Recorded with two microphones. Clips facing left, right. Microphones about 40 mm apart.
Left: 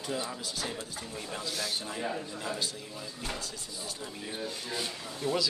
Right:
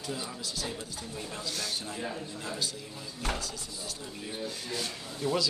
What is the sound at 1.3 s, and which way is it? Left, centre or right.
A man's voice, centre.